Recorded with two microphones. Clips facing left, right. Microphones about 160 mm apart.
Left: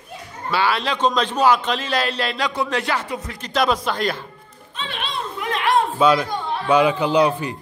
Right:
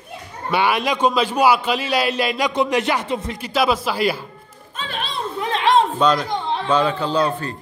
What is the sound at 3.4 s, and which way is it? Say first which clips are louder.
Speech: even; 5° right (ahead or behind).